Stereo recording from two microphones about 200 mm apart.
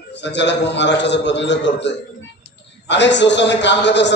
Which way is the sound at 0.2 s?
60° left (ahead or behind).